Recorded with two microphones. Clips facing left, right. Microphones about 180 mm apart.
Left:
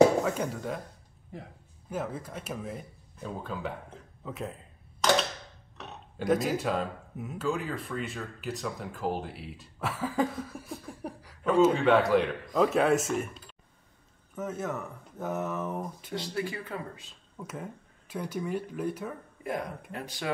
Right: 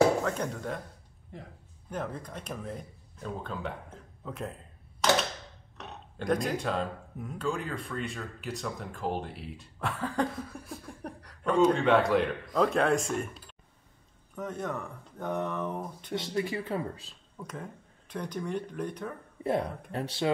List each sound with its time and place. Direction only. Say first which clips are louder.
0.2 s speech: left 1 dB; 5° left (ahead or behind)
5.8 s speech: left 2 dB; 5° left (ahead or behind)
16.2 s speech: right 2 dB; 25° right (ahead or behind)
17.4 s speech: left 1 dB; 5° left (ahead or behind)
19.4 s speech: right 5 dB; 30° right (ahead or behind)